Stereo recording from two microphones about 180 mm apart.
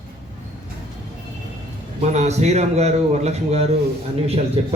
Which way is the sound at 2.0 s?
40° right (ahead or behind).